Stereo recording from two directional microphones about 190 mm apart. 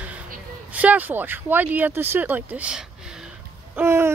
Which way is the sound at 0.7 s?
10° right (ahead or behind).